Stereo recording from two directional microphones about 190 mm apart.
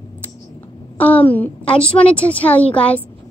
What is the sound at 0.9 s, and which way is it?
A child's voice, 10° left (ahead or behind).